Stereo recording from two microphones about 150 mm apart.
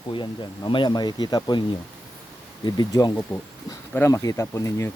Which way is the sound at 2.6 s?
30° left (ahead or behind).